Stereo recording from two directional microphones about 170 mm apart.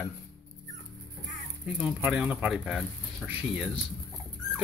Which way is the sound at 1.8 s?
5° right (ahead or behind).